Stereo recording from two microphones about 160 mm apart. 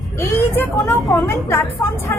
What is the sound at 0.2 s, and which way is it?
Vehicle, 15° left (ahead or behind).